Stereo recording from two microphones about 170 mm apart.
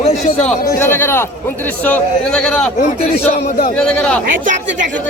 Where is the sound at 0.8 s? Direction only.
15° left (ahead or behind).